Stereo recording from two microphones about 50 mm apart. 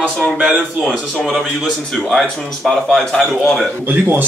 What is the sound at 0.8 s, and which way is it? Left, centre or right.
Speech, centre.